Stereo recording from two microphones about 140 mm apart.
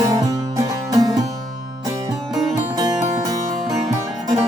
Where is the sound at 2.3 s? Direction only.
Centre (ahead or behind).